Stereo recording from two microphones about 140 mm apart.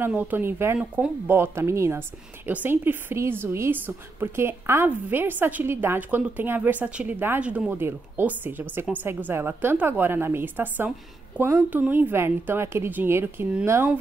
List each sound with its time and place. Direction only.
0.0 s a woman's voice: 15° right (ahead or behind)